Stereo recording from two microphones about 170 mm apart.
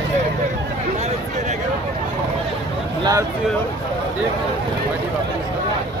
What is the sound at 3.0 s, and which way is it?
Speech, 20° right (ahead or behind).